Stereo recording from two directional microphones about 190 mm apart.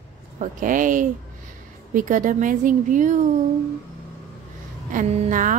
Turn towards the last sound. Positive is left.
turn(degrees=-40)  # may be behind; listen again after turning